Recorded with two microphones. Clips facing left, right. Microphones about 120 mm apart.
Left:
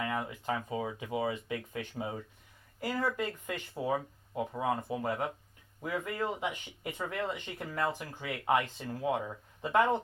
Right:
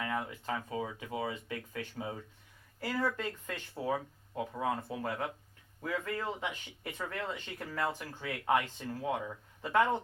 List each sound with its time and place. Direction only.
0.0 s speech: 15° left (ahead or behind)